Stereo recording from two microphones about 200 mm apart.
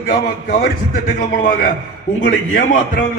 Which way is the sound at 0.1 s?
45° left (ahead or behind).